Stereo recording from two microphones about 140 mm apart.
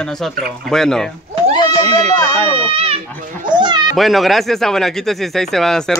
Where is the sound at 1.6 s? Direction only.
30° left (ahead or behind).